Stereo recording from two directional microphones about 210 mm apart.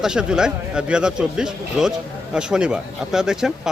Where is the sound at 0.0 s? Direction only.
5° right (ahead or behind).